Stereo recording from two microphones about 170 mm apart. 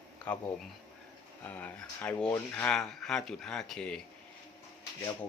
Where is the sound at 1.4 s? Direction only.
10° left (ahead or behind).